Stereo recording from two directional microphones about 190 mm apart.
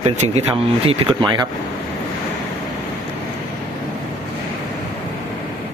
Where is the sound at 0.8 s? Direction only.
25° right (ahead or behind).